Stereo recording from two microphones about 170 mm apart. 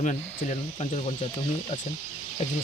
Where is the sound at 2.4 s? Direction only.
40° left (ahead or behind).